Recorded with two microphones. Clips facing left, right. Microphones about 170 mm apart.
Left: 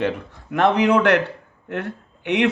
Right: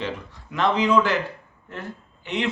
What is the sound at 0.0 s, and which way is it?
Speech, 55° left (ahead or behind).